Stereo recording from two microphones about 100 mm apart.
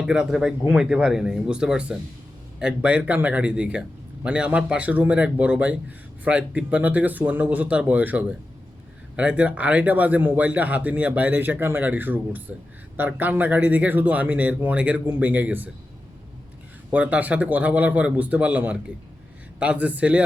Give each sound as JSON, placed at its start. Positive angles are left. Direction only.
{"t": 0.0, "sound": "speech", "side_deg": -5}
{"t": 16.9, "sound": "speech", "side_deg": -15}